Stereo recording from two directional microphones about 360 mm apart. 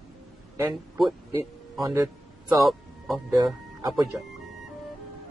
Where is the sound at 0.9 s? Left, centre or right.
Centre.